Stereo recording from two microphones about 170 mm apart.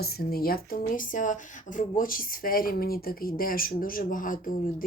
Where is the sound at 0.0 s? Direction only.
65° left (ahead or behind).